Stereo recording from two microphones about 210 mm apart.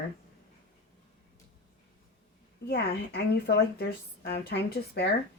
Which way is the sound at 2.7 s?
50° left (ahead or behind).